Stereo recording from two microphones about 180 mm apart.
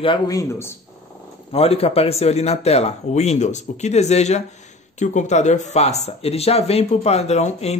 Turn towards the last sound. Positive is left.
turn(degrees=35)  # may be behind; listen again after turning